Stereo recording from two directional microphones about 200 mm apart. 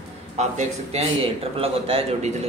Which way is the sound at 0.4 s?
30° right (ahead or behind).